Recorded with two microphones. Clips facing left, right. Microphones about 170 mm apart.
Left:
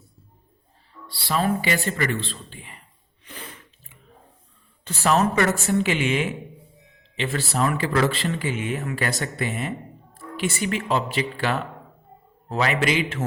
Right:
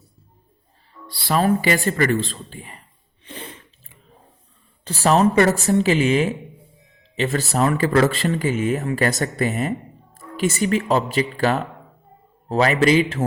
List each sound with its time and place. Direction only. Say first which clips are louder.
1.0 s speech: right 4 dB; 45° right (ahead or behind)
3.2 s a sound: right 4 dB; 30° right (ahead or behind)
4.9 s speech: right 4 dB; 35° right (ahead or behind)